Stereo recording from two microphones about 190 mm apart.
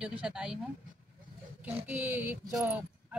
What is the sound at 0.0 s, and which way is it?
Speech, 5° right (ahead or behind).